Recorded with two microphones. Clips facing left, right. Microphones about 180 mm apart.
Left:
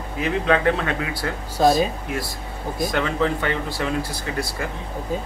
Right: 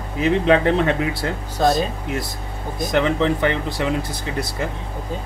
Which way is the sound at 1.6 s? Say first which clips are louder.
Left 1 dB; 5° left (ahead or behind).